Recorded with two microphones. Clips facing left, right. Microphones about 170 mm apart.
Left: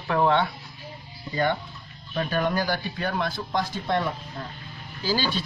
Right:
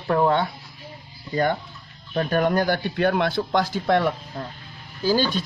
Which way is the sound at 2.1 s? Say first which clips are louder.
Right 4 dB; 45° right (ahead or behind).